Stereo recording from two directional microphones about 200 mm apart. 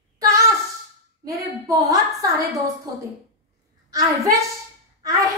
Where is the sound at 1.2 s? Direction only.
15° right (ahead or behind).